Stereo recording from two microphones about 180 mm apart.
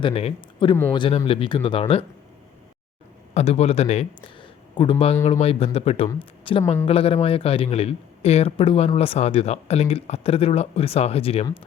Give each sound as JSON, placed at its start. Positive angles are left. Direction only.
{"t": 0.0, "sound": "a man's voice", "side_deg": 35}
{"t": 3.3, "sound": "a man's voice", "side_deg": 35}